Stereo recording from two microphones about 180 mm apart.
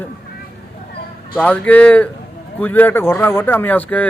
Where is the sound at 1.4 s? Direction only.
5° left (ahead or behind).